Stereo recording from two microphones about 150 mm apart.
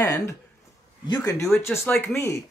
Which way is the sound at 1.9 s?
10° left (ahead or behind).